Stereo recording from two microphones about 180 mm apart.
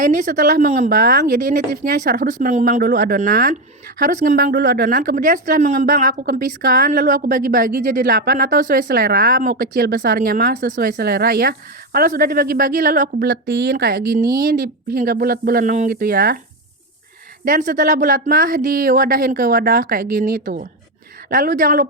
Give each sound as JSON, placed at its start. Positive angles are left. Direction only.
{"t": 0.0, "sound": "a woman's voice", "side_deg": -45}
{"t": 8.9, "sound": "a woman's voice", "side_deg": -60}
{"t": 17.4, "sound": "a woman's voice", "side_deg": -50}